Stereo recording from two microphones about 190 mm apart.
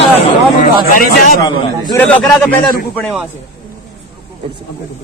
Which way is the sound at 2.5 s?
45° left (ahead or behind).